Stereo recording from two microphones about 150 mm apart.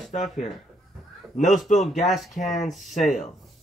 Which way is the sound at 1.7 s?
55° left (ahead or behind).